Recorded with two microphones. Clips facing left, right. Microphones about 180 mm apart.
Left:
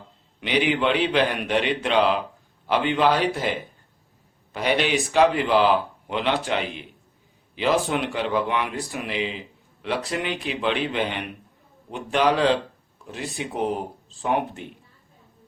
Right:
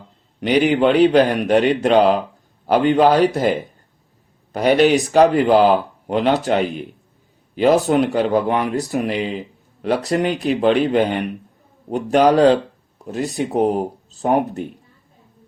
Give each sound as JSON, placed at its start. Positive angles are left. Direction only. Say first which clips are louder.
{"t": 0.3, "sound": "speech", "louder": "right 7 dB", "side_deg": -45}